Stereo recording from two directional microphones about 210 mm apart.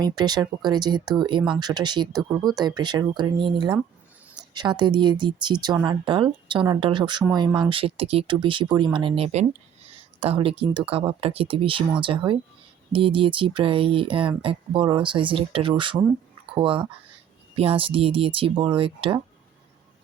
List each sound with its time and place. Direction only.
0.0 s speech: 20° right (ahead or behind)